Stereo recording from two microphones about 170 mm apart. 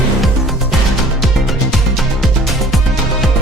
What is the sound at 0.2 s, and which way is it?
Music, centre (ahead or behind).